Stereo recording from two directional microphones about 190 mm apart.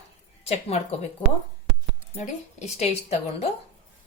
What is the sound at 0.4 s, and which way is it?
Speech, 35° left (ahead or behind).